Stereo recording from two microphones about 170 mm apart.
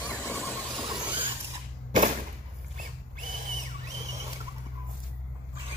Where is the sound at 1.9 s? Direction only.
50° right (ahead or behind).